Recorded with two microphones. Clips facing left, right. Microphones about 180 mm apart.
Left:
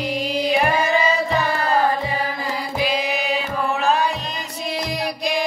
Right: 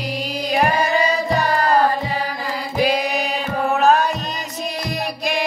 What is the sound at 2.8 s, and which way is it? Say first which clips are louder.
Music: right 4 dB; 40° right (ahead or behind).